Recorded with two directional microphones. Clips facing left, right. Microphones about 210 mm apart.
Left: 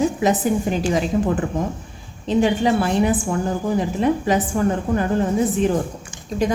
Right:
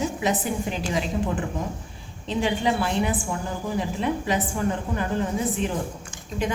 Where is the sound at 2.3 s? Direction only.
45° left (ahead or behind).